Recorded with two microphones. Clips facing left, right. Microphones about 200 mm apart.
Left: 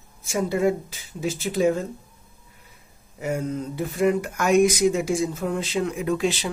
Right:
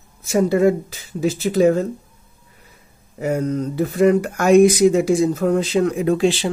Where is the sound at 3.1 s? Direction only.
65° right (ahead or behind).